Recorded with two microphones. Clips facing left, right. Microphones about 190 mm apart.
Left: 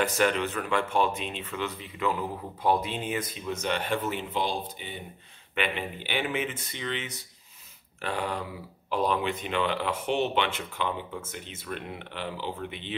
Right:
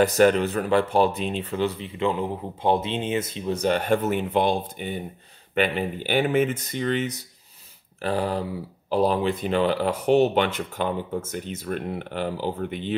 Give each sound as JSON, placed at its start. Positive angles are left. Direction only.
{"t": 0.0, "sound": "speech", "side_deg": -40}
{"t": 5.5, "sound": "speech", "side_deg": -40}